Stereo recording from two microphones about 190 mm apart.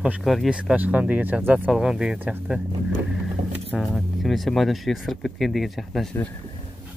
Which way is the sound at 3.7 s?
Centre (ahead or behind).